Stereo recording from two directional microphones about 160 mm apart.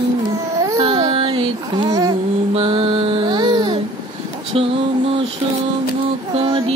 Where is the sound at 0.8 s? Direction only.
30° right (ahead or behind).